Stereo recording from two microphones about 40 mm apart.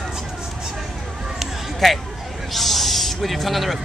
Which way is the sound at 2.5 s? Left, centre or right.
Centre.